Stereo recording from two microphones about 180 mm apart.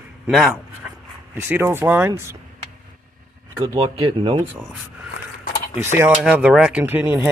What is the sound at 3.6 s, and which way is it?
Speech, 30° right (ahead or behind).